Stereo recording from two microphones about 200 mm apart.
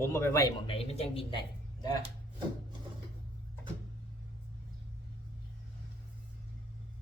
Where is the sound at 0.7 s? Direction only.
30° left (ahead or behind).